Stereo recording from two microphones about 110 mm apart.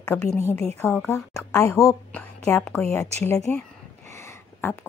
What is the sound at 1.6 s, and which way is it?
Speech, 30° left (ahead or behind).